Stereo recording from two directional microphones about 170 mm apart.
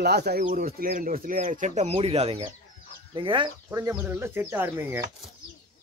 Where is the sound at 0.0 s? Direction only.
75° right (ahead or behind); by 3.8 s 30° right (ahead or behind).